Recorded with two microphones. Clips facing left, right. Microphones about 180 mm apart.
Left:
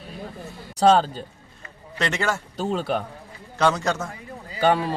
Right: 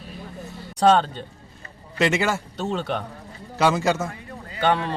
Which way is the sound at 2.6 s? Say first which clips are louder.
Left 2 dB; 5° left (ahead or behind).